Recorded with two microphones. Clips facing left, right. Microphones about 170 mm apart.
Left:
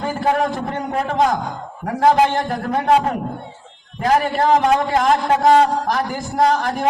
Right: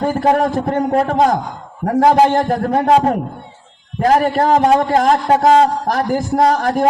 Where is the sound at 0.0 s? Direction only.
40° right (ahead or behind).